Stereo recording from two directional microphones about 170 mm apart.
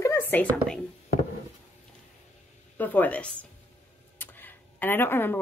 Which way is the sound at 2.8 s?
10° left (ahead or behind).